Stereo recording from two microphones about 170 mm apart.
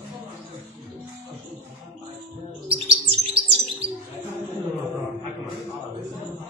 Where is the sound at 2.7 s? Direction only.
35° right (ahead or behind).